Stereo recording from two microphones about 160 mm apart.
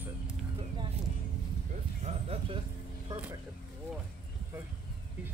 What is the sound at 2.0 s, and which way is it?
Speech, 40° right (ahead or behind).